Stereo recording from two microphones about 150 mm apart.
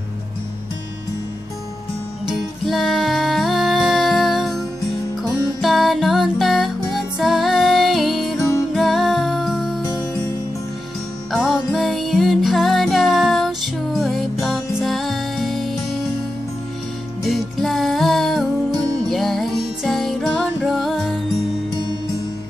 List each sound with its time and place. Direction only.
2.2 s music: centre (ahead or behind)
5.6 s music: centre (ahead or behind)
8.4 s music: 20° left (ahead or behind)
8.7 s music: centre (ahead or behind)
11.3 s music: centre (ahead or behind)
17.2 s music: centre (ahead or behind)